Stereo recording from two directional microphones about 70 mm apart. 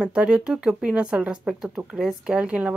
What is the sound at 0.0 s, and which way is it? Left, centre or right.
Speech, centre.